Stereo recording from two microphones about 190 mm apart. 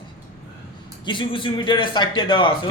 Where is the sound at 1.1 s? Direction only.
25° left (ahead or behind).